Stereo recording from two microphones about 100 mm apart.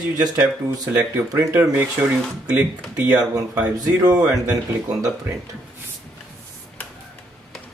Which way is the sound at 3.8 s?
40° right (ahead or behind).